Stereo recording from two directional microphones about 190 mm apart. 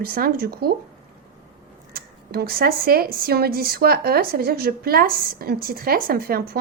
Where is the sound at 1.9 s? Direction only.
50° right (ahead or behind).